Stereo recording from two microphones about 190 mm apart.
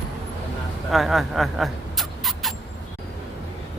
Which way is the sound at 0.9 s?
Centre (ahead or behind).